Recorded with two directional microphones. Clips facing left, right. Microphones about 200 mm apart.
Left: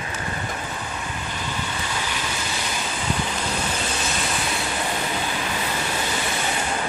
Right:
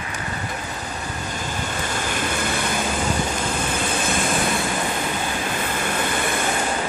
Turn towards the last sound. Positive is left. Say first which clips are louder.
# right 3 dB
turn(degrees=-55)  # may be behind; listen again after turning